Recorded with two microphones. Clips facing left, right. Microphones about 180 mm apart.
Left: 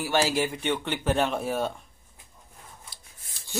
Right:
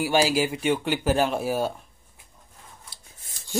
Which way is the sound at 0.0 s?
10° right (ahead or behind).